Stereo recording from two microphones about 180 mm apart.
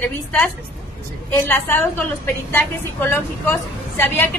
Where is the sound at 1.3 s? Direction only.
10° left (ahead or behind).